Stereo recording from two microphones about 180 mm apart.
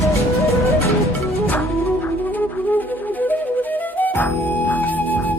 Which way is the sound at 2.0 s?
10° left (ahead or behind).